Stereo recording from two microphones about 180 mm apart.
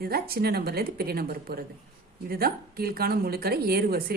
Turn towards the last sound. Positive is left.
turn(degrees=-60)  # may be behind; listen again after turning